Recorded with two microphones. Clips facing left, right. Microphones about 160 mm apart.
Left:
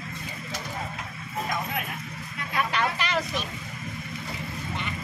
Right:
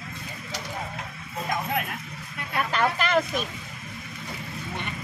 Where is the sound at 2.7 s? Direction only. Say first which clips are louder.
Right 7 dB; 45° right (ahead or behind).